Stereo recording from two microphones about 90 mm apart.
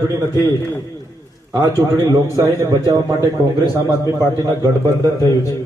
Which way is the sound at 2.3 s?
40° right (ahead or behind).